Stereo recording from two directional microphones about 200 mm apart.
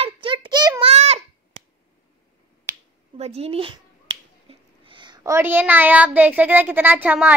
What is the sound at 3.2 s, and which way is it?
Speech, 30° right (ahead or behind).